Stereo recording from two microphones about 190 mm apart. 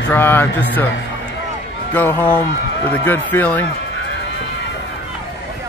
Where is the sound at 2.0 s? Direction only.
10° left (ahead or behind).